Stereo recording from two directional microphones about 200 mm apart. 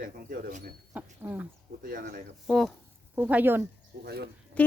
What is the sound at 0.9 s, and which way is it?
Speech, 10° right (ahead or behind).